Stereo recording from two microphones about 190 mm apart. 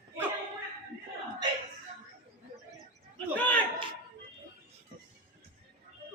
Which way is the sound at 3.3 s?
5° left (ahead or behind).